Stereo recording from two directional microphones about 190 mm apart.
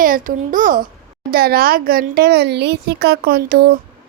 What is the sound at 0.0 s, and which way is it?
A child's voice, 45° right (ahead or behind).